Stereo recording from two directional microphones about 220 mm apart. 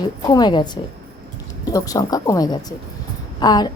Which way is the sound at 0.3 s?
20° left (ahead or behind).